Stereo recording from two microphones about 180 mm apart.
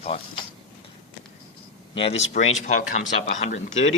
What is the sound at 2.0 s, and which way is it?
Speech, 35° left (ahead or behind).